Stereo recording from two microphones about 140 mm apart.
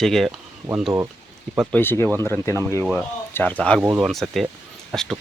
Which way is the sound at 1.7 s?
15° left (ahead or behind).